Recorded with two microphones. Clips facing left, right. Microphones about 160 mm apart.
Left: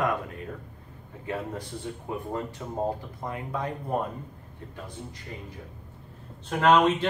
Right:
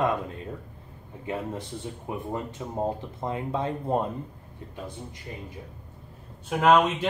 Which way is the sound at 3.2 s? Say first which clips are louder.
Right 3 dB; 25° right (ahead or behind).